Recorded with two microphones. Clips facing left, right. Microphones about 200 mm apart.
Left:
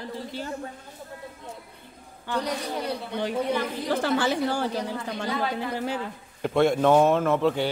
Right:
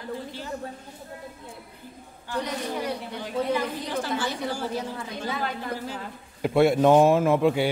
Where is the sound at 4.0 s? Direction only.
65° left (ahead or behind).